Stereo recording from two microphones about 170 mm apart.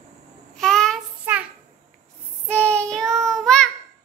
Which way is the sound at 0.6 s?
5° left (ahead or behind).